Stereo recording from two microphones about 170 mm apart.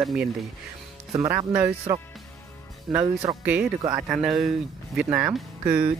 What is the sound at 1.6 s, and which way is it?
Speech, 20° right (ahead or behind).